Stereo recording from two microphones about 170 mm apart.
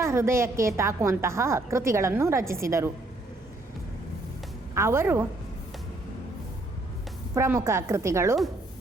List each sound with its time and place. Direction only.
0.0 s a woman's voice: 15° right (ahead or behind)
4.7 s a woman's voice: 15° right (ahead or behind)
7.3 s a woman's voice: 15° right (ahead or behind)